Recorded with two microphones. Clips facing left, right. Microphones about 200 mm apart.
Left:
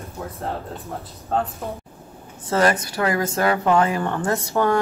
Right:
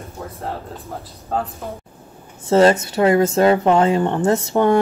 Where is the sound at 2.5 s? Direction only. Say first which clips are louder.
Right 6 dB; 25° right (ahead or behind).